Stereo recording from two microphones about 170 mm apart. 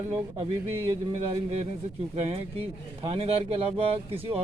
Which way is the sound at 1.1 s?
35° right (ahead or behind).